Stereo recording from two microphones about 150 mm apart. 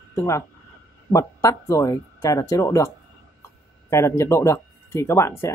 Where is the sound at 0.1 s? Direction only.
20° left (ahead or behind).